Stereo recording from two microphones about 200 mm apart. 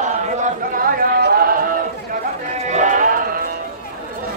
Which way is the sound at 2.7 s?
40° right (ahead or behind).